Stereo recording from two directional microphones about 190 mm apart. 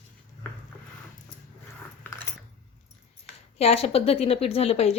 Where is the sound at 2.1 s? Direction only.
10° left (ahead or behind).